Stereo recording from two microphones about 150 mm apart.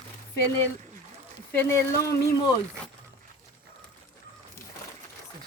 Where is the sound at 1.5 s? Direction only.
20° left (ahead or behind).